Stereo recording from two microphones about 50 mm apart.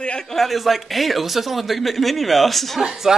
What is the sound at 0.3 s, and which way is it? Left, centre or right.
Speech, centre.